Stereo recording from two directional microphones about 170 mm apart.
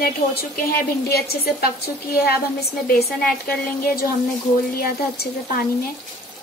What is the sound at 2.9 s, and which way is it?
A woman's voice, 60° left (ahead or behind).